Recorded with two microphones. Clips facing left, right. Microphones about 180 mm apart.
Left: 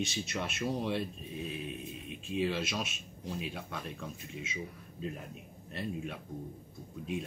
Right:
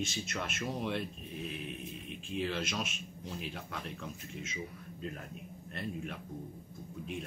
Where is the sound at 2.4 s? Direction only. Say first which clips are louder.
Left 2 dB; 10° left (ahead or behind).